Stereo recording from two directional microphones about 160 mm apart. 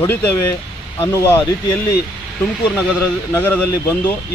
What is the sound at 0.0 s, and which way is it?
Speech, 15° left (ahead or behind).